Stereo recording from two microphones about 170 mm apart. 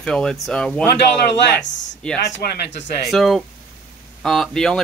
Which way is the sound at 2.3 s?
90° left.